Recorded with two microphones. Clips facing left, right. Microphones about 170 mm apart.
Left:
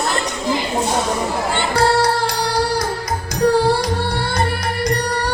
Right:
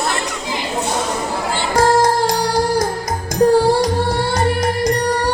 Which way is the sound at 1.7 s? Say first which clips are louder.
Right 3 dB; 45° right (ahead or behind).